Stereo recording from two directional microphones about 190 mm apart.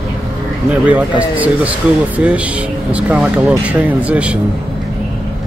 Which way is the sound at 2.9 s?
5° right (ahead or behind).